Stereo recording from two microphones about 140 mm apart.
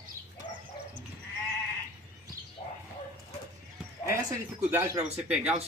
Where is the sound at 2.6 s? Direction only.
45° left (ahead or behind).